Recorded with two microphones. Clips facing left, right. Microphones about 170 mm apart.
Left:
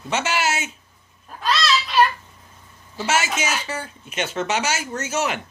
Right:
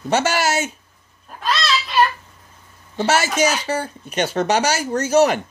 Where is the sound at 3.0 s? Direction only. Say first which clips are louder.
Right 5 dB; 40° right (ahead or behind).